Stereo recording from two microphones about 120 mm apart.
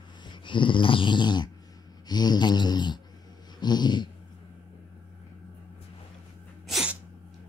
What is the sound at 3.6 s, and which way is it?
Dog, 35° left (ahead or behind).